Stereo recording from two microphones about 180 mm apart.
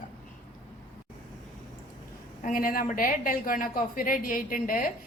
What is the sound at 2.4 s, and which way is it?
A woman's voice, 50° left (ahead or behind).